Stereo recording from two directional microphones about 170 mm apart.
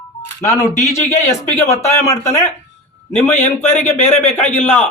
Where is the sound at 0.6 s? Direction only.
40° left (ahead or behind).